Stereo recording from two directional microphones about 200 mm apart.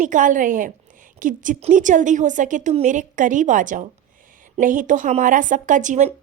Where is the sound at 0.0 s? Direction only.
40° right (ahead or behind).